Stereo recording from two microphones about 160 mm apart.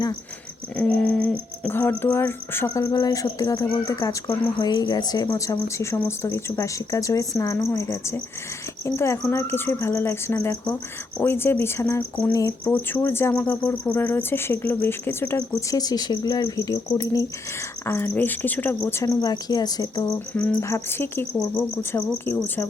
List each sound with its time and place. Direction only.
0.8 s cricket: 5° left (ahead or behind)
8.8 s speech: 15° left (ahead or behind)
12.3 s cricket: 20° left (ahead or behind)
12.9 s speech: 15° left (ahead or behind)
18.9 s cricket: 20° left (ahead or behind)
20.1 s speech: 10° left (ahead or behind)